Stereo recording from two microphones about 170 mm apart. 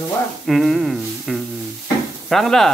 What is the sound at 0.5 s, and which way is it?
Speech, centre (ahead or behind).